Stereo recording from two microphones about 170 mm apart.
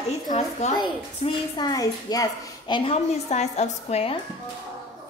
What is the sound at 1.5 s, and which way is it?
A woman's voice, 25° left (ahead or behind).